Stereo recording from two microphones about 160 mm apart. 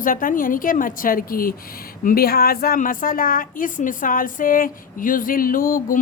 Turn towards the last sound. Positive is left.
turn(degrees=60)  # may be behind; listen again after turning